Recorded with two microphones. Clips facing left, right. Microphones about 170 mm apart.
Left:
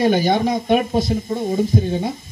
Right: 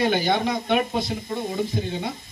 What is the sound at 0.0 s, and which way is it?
Speech, 45° left (ahead or behind).